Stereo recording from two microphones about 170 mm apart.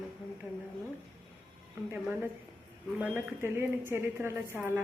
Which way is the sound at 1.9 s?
10° right (ahead or behind).